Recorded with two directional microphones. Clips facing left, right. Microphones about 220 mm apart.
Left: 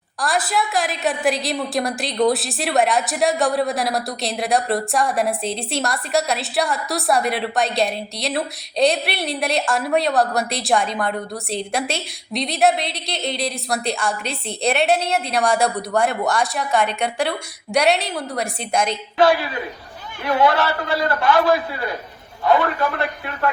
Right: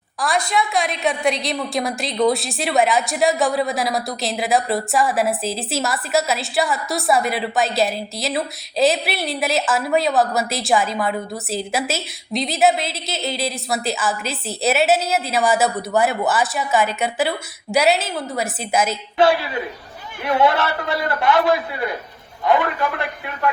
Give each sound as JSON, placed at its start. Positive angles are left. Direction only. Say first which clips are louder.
{"t": 0.2, "sound": "a woman's voice", "louder": "right 1 dB", "side_deg": 0}
{"t": 19.2, "sound": "a man's voice", "louder": "even", "side_deg": -25}